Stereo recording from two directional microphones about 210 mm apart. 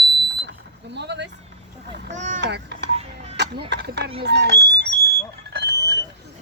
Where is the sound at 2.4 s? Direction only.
55° right (ahead or behind).